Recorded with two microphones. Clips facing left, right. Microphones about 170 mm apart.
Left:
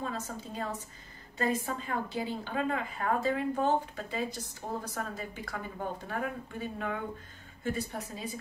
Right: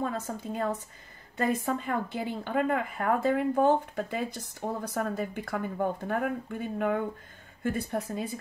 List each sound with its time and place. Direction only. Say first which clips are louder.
0.0 s a woman's voice: right 5 dB; 55° right (ahead or behind)